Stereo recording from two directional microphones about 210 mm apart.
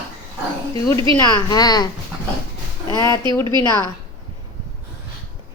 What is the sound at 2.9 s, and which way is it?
Speech, 15° left (ahead or behind).